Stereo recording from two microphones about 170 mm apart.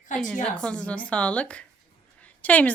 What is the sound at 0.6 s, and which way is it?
A woman's voice, 5° left (ahead or behind).